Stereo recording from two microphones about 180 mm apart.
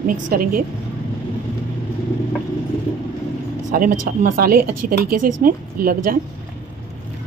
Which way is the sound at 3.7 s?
50° right (ahead or behind).